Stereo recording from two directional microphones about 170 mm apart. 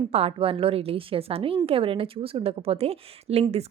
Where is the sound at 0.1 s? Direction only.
35° right (ahead or behind).